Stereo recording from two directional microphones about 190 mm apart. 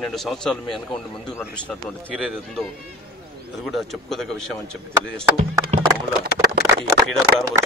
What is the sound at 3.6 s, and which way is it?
Speech, centre (ahead or behind).